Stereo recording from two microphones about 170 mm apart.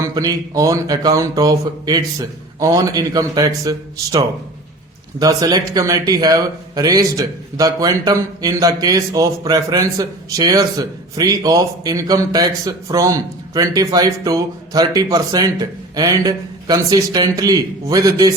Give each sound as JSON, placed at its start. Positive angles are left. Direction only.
{"t": 0.0, "sound": "speech", "side_deg": -20}